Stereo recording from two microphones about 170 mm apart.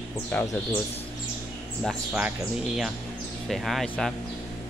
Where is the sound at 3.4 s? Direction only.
Centre (ahead or behind).